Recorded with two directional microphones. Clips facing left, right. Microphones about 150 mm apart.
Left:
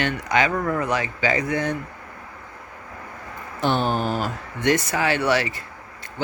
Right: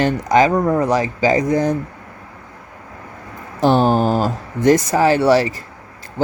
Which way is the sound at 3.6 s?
40° right (ahead or behind).